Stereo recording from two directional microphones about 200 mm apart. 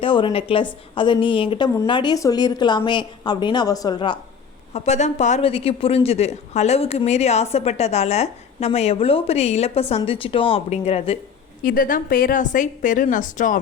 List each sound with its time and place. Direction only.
0.0 s a woman's voice: 25° left (ahead or behind)
4.7 s a woman's voice: 35° left (ahead or behind)
11.6 s speech: 45° left (ahead or behind)